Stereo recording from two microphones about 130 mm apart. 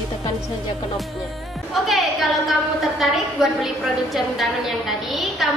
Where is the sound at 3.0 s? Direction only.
Centre (ahead or behind).